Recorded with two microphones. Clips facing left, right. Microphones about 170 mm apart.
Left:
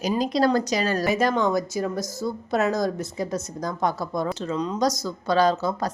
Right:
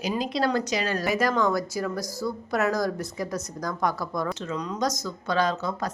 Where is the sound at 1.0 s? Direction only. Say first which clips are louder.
Even; 25° left (ahead or behind).